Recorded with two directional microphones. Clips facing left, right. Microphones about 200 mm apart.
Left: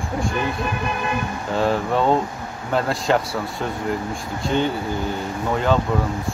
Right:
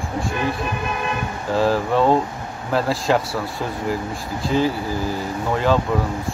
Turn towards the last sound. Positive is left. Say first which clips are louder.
# right 1 dB
turn(degrees=0)  # may be behind; listen again after turning